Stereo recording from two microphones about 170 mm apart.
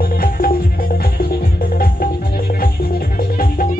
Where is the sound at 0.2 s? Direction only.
60° left (ahead or behind).